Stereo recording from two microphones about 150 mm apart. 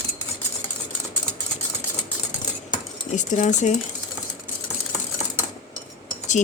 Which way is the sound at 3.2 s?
55° left (ahead or behind).